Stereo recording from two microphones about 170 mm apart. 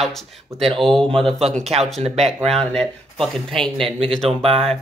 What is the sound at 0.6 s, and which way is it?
Speech, 30° right (ahead or behind).